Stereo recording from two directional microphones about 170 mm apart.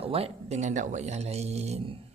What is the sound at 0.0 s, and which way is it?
A man's voice, 35° right (ahead or behind).